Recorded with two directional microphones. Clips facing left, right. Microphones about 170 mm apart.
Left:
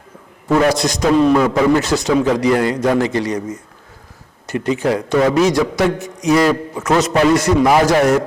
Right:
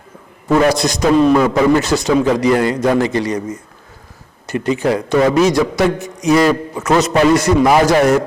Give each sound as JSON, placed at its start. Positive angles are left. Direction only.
{"t": 0.4, "sound": "a sound", "side_deg": -25}
{"t": 0.9, "sound": "a man's voice", "side_deg": -25}
{"t": 4.5, "sound": "a man's voice", "side_deg": -15}